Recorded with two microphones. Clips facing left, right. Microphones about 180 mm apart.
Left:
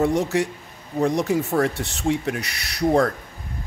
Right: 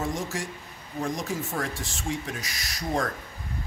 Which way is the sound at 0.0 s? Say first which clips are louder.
Left 10 dB; 65° left (ahead or behind).